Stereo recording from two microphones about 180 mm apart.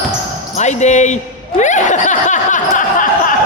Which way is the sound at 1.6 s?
40° left (ahead or behind).